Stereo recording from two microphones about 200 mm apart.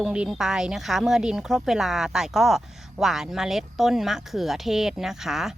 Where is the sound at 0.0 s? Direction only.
5° right (ahead or behind).